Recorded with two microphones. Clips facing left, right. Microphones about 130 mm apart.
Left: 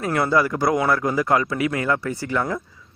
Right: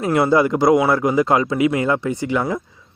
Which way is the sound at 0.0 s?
20° right (ahead or behind).